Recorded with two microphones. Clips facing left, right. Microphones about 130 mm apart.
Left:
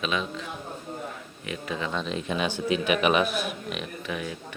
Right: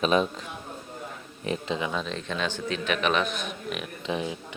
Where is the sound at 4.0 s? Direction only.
25° right (ahead or behind).